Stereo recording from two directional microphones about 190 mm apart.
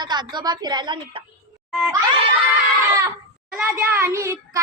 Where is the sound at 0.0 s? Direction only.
25° right (ahead or behind).